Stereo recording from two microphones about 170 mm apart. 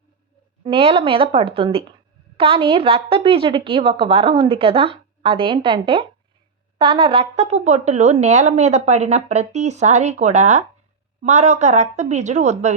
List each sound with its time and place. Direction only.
0.6 s a woman's voice: 35° right (ahead or behind)